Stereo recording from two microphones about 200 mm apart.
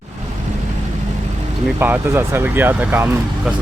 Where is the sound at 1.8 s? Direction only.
10° right (ahead or behind).